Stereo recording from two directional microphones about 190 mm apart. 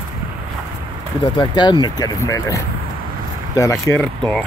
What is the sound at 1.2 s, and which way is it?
Speech, 25° left (ahead or behind).